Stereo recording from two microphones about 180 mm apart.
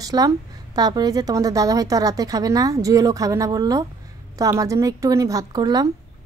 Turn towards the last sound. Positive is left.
turn(degrees=-20)  # may be behind; listen again after turning